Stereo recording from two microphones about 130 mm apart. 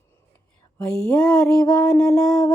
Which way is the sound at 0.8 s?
5° left (ahead or behind).